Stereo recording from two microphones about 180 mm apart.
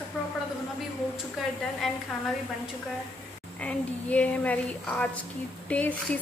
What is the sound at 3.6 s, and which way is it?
A woman's voice, 10° left (ahead or behind).